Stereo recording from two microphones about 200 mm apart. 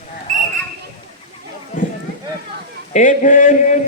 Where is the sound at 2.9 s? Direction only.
40° left (ahead or behind).